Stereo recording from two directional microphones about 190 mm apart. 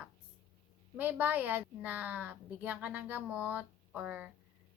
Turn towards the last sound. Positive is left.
turn(degrees=-5)  # may be behind; listen again after turning